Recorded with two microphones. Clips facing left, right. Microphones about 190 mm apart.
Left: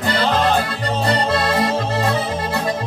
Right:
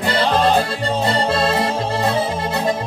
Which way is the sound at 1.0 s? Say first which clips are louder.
Even; 25° right (ahead or behind).